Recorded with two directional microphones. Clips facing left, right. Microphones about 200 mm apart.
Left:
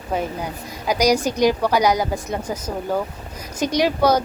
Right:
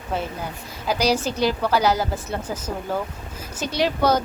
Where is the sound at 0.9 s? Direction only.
15° left (ahead or behind).